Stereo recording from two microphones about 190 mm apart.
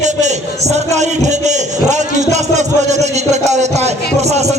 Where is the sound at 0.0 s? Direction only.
40° right (ahead or behind).